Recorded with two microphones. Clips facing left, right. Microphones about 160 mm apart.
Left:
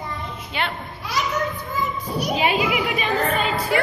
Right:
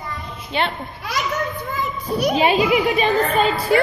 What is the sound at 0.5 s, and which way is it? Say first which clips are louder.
Speech: right 5 dB; 30° right (ahead or behind).